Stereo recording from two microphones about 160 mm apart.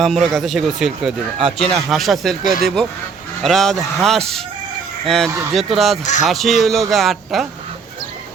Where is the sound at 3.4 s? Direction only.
Centre (ahead or behind).